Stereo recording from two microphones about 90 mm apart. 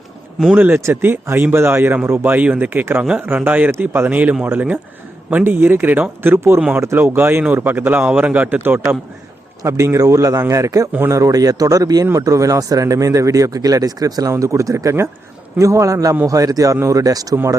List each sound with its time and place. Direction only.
0.5 s a man's voice: 25° right (ahead or behind)
9.6 s speech: 35° right (ahead or behind)